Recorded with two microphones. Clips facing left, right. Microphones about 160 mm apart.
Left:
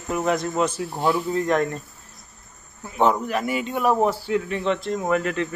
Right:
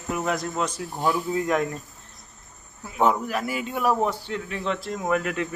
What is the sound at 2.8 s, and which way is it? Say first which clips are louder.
Speech: left 2 dB; 5° right (ahead or behind).